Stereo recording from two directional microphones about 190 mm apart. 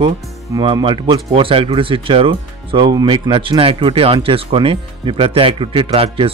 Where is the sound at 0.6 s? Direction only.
25° right (ahead or behind).